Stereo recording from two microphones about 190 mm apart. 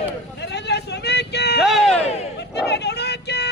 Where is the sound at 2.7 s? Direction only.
60° left (ahead or behind).